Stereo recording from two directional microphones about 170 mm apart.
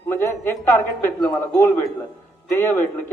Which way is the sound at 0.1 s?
15° left (ahead or behind).